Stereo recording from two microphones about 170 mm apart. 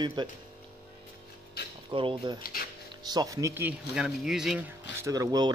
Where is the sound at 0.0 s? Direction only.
25° right (ahead or behind).